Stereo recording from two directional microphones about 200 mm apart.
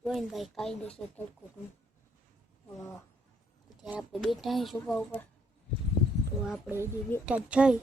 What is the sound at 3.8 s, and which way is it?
Speech, centre (ahead or behind).